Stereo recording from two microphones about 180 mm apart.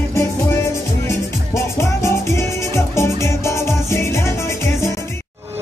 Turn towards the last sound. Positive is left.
turn(degrees=15)  # may be behind; listen again after turning